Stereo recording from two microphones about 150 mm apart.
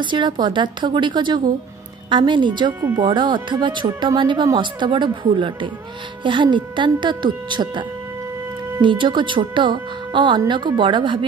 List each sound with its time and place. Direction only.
0.0 s speech: 30° right (ahead or behind)
8.8 s speech: 35° right (ahead or behind)